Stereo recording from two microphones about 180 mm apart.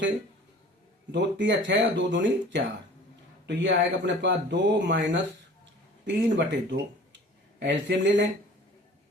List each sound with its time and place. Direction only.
1.1 s speech: 90° right
3.4 s speech: 75° right (ahead or behind)
7.6 s speech: 80° right